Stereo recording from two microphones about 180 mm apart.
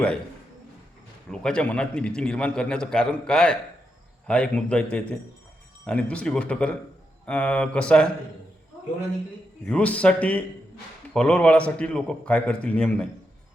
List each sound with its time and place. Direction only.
1.3 s a man's voice: 5° left (ahead or behind)
9.6 s a man's voice: 5° left (ahead or behind)